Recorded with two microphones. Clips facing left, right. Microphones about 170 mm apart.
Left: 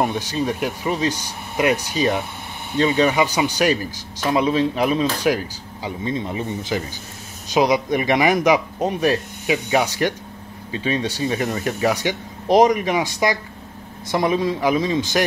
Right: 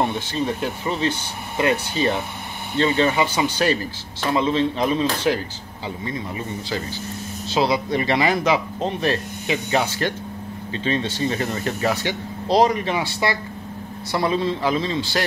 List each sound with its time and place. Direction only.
0.0 s a man's voice: 15° left (ahead or behind)